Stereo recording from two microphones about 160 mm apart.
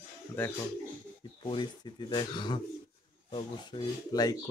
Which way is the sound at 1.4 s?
30° left (ahead or behind).